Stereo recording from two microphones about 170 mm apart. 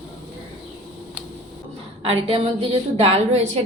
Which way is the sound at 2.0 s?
35° right (ahead or behind).